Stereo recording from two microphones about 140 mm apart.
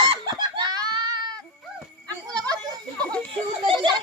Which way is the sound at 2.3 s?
30° right (ahead or behind).